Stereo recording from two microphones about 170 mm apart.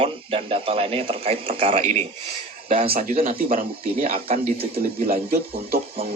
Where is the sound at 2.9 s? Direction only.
55° right (ahead or behind).